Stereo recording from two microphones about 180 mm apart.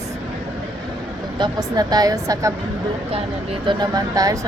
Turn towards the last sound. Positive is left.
turn(degrees=-20)  # may be behind; listen again after turning